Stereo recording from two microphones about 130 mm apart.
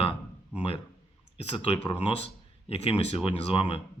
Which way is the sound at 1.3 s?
50° left (ahead or behind).